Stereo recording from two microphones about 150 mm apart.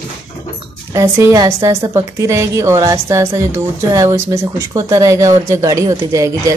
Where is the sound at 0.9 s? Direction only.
20° right (ahead or behind).